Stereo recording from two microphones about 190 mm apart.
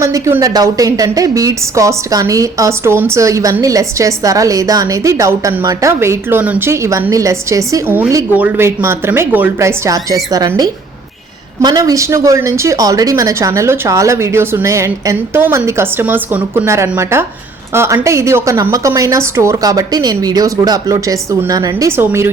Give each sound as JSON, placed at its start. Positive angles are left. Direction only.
{"t": 0.0, "sound": "a woman's voice", "side_deg": -15}
{"t": 11.6, "sound": "a woman's voice", "side_deg": -20}